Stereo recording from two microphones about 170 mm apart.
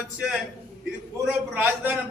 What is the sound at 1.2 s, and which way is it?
Speech, 10° right (ahead or behind).